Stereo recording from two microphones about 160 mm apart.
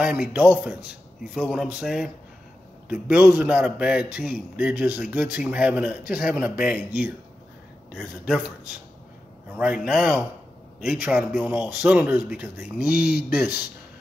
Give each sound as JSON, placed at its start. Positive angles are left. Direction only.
{"t": 0.0, "sound": "a man's voice", "side_deg": -5}
{"t": 7.9, "sound": "a man's voice", "side_deg": 0}
{"t": 9.6, "sound": "a man's voice", "side_deg": -5}
{"t": 12.9, "sound": "speech", "side_deg": 80}